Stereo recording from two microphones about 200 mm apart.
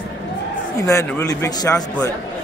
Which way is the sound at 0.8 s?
15° left (ahead or behind).